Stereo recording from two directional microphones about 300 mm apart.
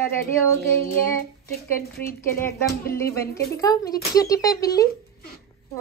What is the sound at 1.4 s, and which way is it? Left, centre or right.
Speech, left.